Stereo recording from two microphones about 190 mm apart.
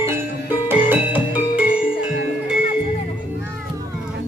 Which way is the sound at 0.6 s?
10° right (ahead or behind).